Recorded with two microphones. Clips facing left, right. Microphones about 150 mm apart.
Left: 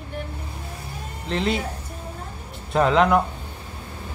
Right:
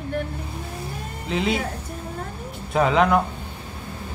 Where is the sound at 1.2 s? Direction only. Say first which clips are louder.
Even; 5° right (ahead or behind).